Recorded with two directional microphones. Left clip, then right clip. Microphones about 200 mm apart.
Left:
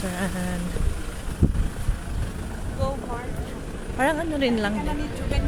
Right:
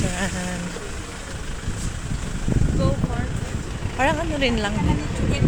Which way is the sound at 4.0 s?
15° left (ahead or behind).